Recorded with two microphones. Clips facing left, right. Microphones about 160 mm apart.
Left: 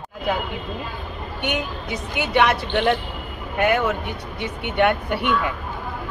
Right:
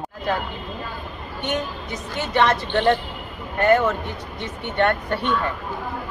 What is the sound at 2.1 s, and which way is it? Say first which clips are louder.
Speech: left 1 dB; 10° left (ahead or behind).